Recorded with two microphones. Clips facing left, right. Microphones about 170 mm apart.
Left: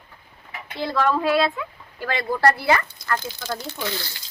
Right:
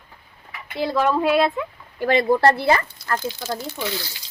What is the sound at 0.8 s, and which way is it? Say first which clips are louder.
A woman's voice: right 2 dB; 15° right (ahead or behind).